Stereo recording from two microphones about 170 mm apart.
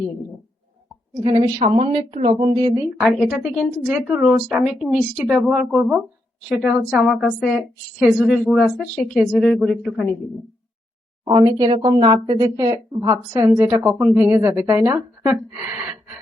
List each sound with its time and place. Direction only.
1.2 s speech: 30° right (ahead or behind)
3.0 s a woman's voice: 5° right (ahead or behind)
11.3 s speech: 20° right (ahead or behind)